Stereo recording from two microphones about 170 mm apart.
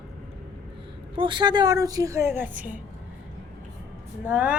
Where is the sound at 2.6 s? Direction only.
50° right (ahead or behind).